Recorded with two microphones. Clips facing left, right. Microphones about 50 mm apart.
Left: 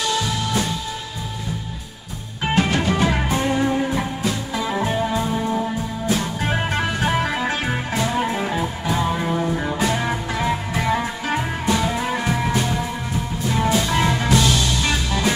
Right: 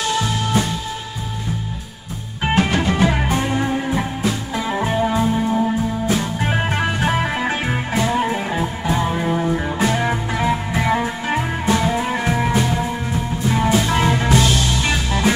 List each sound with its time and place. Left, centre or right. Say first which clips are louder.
0.1 s music: right 3 dB; right
2.4 s music: right 2 dB; centre